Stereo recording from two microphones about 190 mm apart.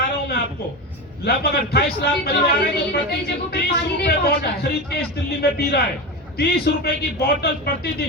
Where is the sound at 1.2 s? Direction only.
55° left (ahead or behind).